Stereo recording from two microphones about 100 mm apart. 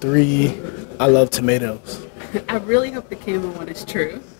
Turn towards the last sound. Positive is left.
turn(degrees=30)  # may be behind; listen again after turning